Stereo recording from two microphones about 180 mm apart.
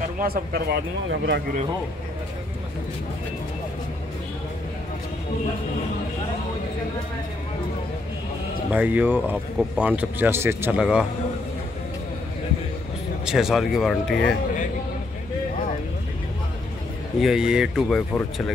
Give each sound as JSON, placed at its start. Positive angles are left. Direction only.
{"t": 0.2, "sound": "speech", "side_deg": -55}
{"t": 8.6, "sound": "speech", "side_deg": -10}
{"t": 13.2, "sound": "speech", "side_deg": -5}
{"t": 17.2, "sound": "speech", "side_deg": -5}